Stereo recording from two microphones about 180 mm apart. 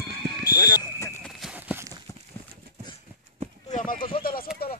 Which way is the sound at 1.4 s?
5° right (ahead or behind).